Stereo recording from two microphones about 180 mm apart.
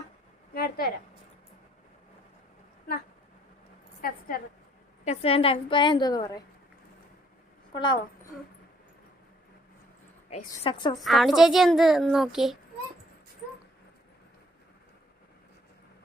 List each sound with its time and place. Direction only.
0.5 s a woman's voice: 60° left (ahead or behind)
5.0 s a woman's voice: 35° left (ahead or behind)
7.7 s a woman's voice: 25° left (ahead or behind)
10.2 s a woman's voice: 35° left (ahead or behind)
11.0 s a woman's voice: centre (ahead or behind)